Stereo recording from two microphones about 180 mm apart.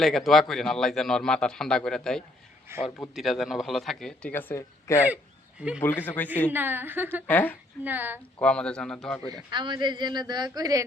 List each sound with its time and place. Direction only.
0.0 s speech: centre (ahead or behind)
2.7 s a woman's voice: 15° right (ahead or behind)
3.2 s speech: centre (ahead or behind)
4.9 s speech: 10° right (ahead or behind)
5.8 s a man's voice: 10° left (ahead or behind)
6.5 s a woman's voice: 10° right (ahead or behind)
7.3 s a man's voice: 10° left (ahead or behind)
7.9 s a woman's voice: 10° right (ahead or behind)
8.4 s speech: 5° left (ahead or behind)
9.3 s speech: 25° right (ahead or behind)